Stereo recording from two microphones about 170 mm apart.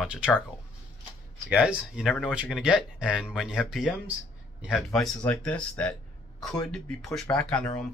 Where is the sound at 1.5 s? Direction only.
5° right (ahead or behind).